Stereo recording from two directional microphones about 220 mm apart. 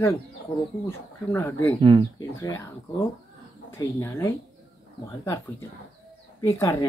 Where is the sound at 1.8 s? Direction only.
25° right (ahead or behind).